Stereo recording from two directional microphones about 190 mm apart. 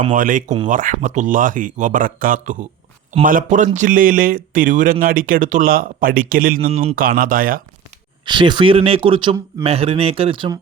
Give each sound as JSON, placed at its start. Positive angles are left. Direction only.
{"t": 0.1, "sound": "speech", "side_deg": -45}
{"t": 6.7, "sound": "speech", "side_deg": -35}
{"t": 6.9, "sound": "speech", "side_deg": -50}
{"t": 8.3, "sound": "speech", "side_deg": -25}